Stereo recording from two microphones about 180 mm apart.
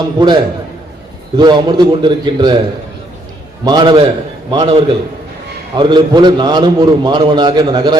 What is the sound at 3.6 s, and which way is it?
A man's voice, 25° right (ahead or behind).